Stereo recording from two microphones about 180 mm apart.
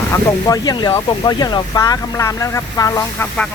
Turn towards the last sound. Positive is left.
turn(degrees=20)  # may be behind; listen again after turning